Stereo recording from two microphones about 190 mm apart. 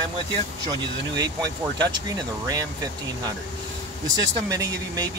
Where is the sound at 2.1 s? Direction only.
20° right (ahead or behind).